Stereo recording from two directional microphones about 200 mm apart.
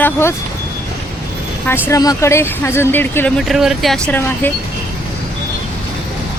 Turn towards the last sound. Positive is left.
turn(degrees=5)  # may be behind; listen again after turning